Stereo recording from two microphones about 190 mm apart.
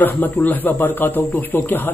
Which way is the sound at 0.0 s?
10° left (ahead or behind).